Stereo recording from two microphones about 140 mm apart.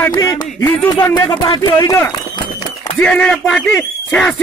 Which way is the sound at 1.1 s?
25° left (ahead or behind).